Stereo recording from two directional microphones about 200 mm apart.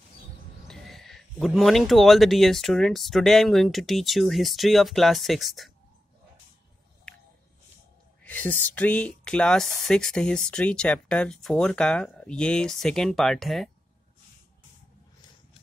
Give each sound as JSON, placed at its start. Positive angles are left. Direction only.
{"t": 0.7, "sound": "speech", "side_deg": 0}
{"t": 8.2, "sound": "speech", "side_deg": 10}